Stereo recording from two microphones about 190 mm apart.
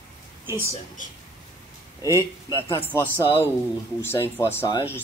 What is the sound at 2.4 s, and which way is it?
Speech, 15° left (ahead or behind).